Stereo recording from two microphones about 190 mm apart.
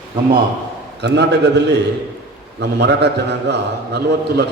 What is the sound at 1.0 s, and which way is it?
A man's voice, 65° right (ahead or behind).